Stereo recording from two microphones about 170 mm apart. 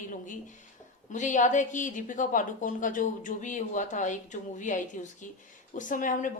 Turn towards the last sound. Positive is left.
turn(degrees=50)  # may be behind; listen again after turning